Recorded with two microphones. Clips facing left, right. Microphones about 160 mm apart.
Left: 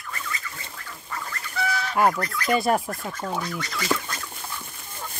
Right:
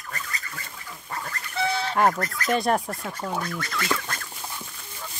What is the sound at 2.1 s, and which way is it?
Speech, 40° right (ahead or behind).